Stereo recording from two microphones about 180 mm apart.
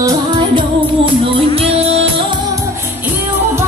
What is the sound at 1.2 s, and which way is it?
Music, 35° right (ahead or behind).